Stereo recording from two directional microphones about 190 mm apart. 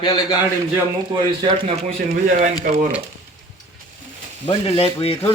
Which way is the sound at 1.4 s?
35° right (ahead or behind).